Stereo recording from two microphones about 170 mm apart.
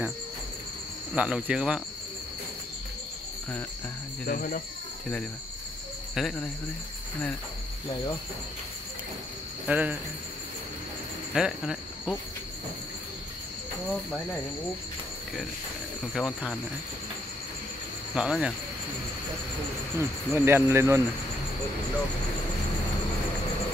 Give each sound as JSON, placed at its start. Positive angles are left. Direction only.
{"t": 1.1, "sound": "speech", "side_deg": -5}
{"t": 4.3, "sound": "cricket", "side_deg": 60}
{"t": 6.1, "sound": "speech", "side_deg": 5}
{"t": 9.7, "sound": "speech", "side_deg": -10}
{"t": 11.3, "sound": "speech", "side_deg": -5}
{"t": 16.1, "sound": "speech", "side_deg": 0}
{"t": 18.1, "sound": "speech", "side_deg": -5}
{"t": 20.0, "sound": "speech", "side_deg": -15}